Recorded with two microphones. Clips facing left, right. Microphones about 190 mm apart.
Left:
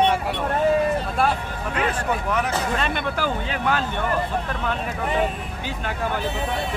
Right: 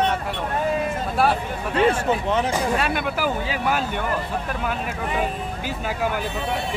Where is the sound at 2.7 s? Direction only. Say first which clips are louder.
Right 2 dB; 10° right (ahead or behind).